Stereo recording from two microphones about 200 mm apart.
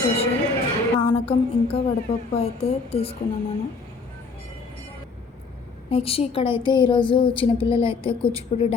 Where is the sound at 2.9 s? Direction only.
30° left (ahead or behind).